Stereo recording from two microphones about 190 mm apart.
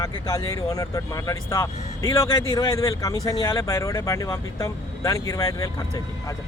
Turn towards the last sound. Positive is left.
turn(degrees=20)  # may be behind; listen again after turning